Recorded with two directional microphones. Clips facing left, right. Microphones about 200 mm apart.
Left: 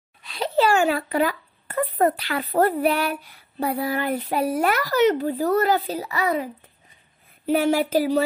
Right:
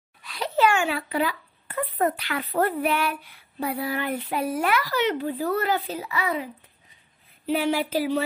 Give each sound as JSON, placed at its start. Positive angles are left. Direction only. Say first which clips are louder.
{"t": 0.2, "sound": "a child's voice", "louder": "left 2 dB", "side_deg": 25}